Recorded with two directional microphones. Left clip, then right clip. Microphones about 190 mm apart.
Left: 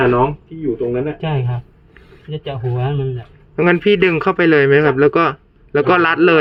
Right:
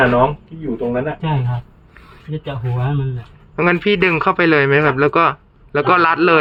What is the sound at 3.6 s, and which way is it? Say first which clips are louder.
A man's voice: left 2 dB; 15° left (ahead or behind).